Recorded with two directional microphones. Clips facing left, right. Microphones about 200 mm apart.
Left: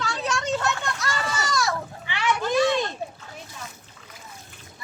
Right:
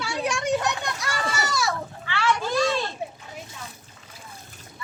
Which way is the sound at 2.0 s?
15° left (ahead or behind).